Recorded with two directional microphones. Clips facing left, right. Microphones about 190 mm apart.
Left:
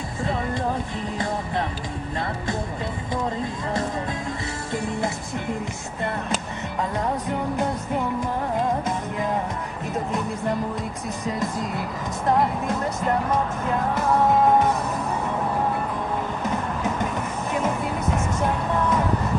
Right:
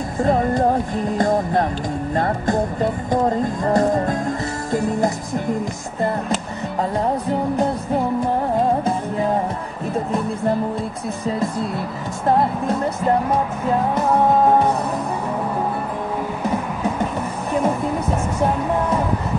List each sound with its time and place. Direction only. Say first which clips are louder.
0.2 s music: right 9 dB; 45° right (ahead or behind)
5.9 s music: right 6 dB; 35° right (ahead or behind)
11.2 s music: right 5 dB; 30° right (ahead or behind)